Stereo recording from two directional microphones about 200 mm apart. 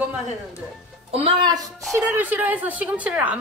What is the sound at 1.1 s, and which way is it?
Speech, 25° right (ahead or behind).